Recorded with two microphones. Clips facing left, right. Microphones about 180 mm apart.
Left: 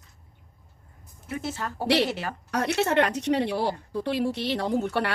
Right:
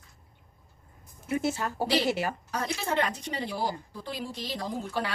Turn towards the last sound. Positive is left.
turn(degrees=70)  # may be behind; listen again after turning